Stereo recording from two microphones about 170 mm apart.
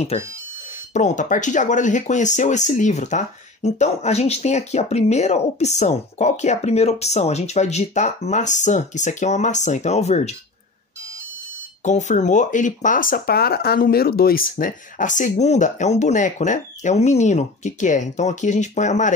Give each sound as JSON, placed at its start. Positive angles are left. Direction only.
{"t": 0.1, "sound": "speech", "side_deg": 40}
{"t": 11.8, "sound": "speech", "side_deg": 45}